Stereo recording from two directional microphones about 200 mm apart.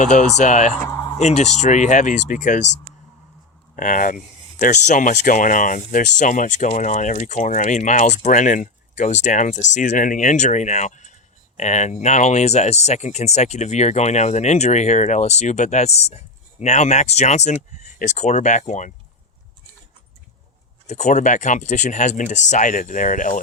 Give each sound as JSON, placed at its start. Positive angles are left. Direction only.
{"t": 0.0, "sound": "speech", "side_deg": 40}
{"t": 0.9, "sound": "a sound", "side_deg": 15}
{"t": 1.2, "sound": "speech", "side_deg": 35}
{"t": 3.8, "sound": "speech", "side_deg": 40}
{"t": 20.8, "sound": "speech", "side_deg": 35}